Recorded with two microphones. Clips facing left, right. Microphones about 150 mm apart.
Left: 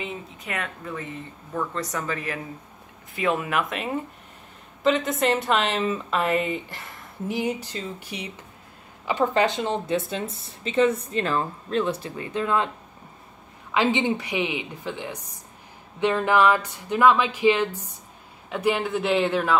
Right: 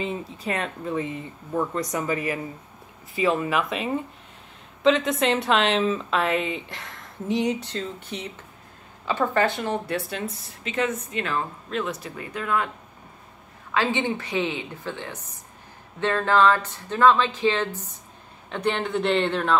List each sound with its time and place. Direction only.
0.0 s speech: 30° right (ahead or behind); by 2.3 s 10° right (ahead or behind)
3.2 s a woman's voice: centre (ahead or behind); by 12.6 s 25° left (ahead or behind)
13.7 s a woman's voice: 15° left (ahead or behind)